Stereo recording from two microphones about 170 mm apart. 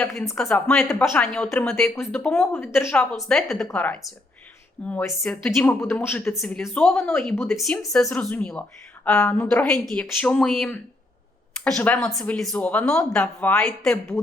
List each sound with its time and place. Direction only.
0.3 s speech: 5° left (ahead or behind)